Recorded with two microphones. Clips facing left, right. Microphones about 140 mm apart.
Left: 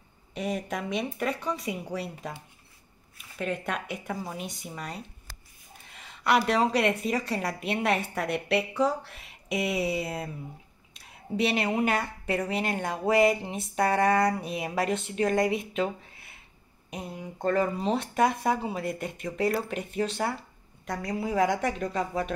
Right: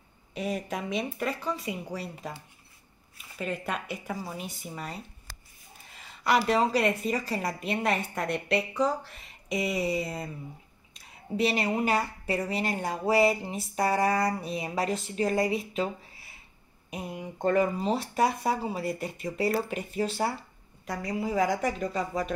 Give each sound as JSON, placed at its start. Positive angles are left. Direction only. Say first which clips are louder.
{"t": 0.3, "sound": "speech", "louder": "left 1 dB", "side_deg": 0}
{"t": 3.3, "sound": "speech", "louder": "left 1 dB", "side_deg": 0}
{"t": 16.9, "sound": "speech", "louder": "right 1 dB", "side_deg": -15}
{"t": 17.7, "sound": "speech", "louder": "left 1 dB", "side_deg": 0}